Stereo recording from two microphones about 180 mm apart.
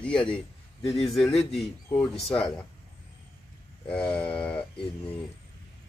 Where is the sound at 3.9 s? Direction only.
5° left (ahead or behind).